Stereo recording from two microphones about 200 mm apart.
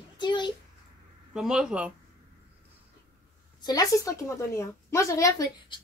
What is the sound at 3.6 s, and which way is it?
A woman's voice, 20° left (ahead or behind).